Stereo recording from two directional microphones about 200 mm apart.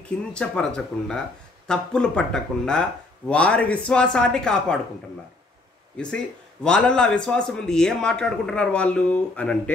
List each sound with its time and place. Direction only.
0.3 s a man's voice: 5° left (ahead or behind)
5.9 s a man's voice: 5° left (ahead or behind)